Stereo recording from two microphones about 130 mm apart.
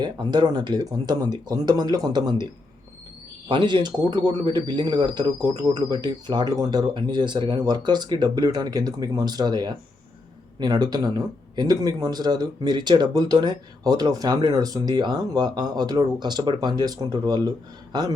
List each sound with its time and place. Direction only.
0.0 s speech: 35° right (ahead or behind)
3.5 s speech: 40° right (ahead or behind)